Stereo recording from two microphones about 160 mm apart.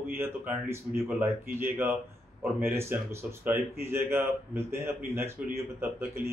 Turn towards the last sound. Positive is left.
turn(degrees=-15)  # may be behind; listen again after turning